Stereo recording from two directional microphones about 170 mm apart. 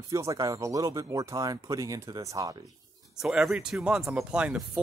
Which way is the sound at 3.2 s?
5° right (ahead or behind).